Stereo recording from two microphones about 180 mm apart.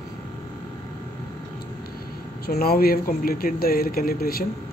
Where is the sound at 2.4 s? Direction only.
60° left (ahead or behind).